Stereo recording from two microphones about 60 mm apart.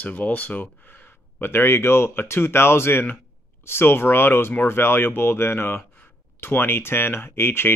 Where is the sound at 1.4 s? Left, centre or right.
Left.